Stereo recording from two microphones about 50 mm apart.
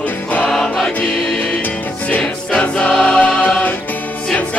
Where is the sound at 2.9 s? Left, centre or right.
Centre.